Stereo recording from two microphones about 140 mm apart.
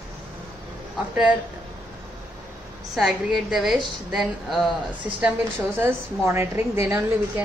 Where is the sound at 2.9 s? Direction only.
Centre (ahead or behind).